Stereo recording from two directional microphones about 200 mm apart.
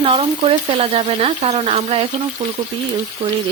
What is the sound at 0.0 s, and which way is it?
Speech, 30° right (ahead or behind).